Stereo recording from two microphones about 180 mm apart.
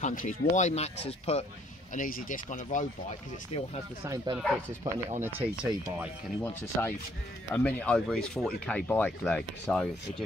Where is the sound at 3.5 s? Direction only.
35° left (ahead or behind).